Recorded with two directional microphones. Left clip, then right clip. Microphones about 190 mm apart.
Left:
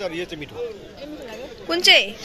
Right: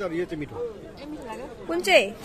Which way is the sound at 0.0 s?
60° right (ahead or behind).